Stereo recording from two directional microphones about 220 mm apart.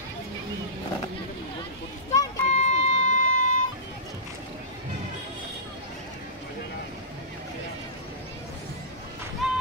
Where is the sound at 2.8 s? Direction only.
30° left (ahead or behind).